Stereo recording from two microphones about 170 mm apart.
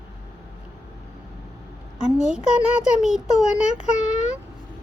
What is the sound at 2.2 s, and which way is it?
A child's voice, 5° right (ahead or behind).